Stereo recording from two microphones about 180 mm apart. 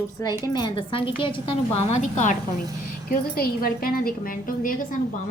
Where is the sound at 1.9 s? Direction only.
45° left (ahead or behind).